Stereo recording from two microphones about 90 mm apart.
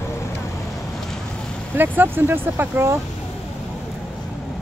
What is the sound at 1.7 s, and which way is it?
Speech, 20° right (ahead or behind).